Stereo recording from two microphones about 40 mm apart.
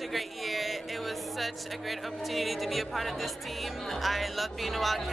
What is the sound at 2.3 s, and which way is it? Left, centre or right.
Speech, centre.